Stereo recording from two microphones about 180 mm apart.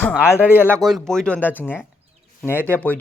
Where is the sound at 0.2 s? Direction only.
10° left (ahead or behind).